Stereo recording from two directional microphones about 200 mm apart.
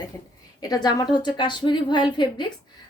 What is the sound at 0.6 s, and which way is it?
A woman's voice, 20° left (ahead or behind).